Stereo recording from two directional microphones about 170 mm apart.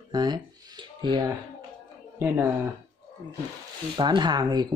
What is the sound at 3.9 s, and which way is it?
Speech, 25° right (ahead or behind).